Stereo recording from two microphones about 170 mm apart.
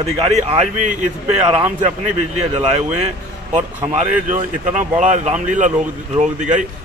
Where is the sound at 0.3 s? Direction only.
40° right (ahead or behind).